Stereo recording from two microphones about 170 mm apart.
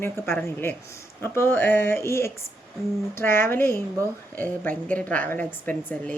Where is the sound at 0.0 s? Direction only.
15° left (ahead or behind).